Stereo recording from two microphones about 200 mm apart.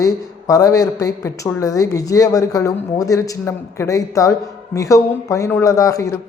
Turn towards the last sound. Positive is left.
turn(degrees=15)  # may be behind; listen again after turning